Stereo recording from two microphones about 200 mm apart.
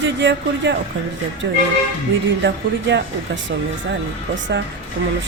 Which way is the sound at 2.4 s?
60° right (ahead or behind).